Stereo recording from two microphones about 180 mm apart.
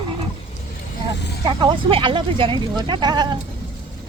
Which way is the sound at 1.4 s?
25° right (ahead or behind).